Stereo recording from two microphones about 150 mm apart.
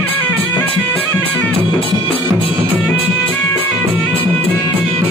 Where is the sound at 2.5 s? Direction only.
10° right (ahead or behind).